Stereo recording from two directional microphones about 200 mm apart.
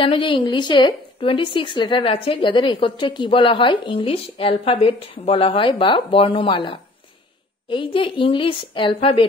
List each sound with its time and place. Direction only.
0.0 s a woman's voice: 25° left (ahead or behind)